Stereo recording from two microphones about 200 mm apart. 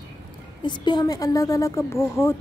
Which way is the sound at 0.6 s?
20° left (ahead or behind).